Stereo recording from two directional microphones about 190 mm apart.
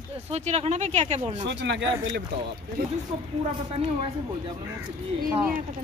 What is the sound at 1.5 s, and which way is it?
Speech, 70° right (ahead or behind).